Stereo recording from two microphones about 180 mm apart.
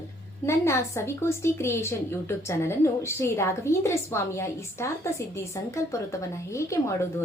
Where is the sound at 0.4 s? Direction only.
15° left (ahead or behind).